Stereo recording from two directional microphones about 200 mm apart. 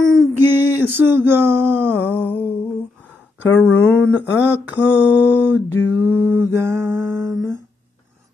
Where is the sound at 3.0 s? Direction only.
10° right (ahead or behind).